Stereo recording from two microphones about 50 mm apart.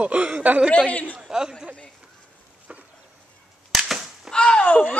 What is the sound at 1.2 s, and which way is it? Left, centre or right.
Chatter, centre.